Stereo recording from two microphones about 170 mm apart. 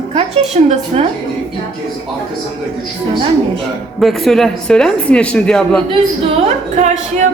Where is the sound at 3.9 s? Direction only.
Centre (ahead or behind).